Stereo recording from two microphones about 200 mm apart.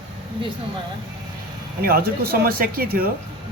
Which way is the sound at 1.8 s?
50° right (ahead or behind).